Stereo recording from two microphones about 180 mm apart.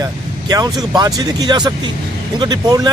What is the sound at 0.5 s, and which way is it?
Speech, 20° right (ahead or behind).